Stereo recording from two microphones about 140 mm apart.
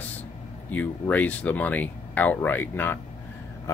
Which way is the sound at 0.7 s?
10° left (ahead or behind).